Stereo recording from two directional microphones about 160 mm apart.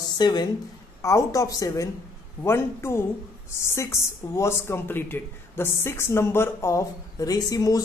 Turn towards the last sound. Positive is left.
turn(degrees=20)  # may be behind; listen again after turning